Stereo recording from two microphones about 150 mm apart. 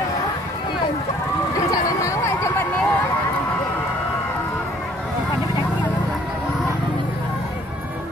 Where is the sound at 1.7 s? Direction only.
20° left (ahead or behind).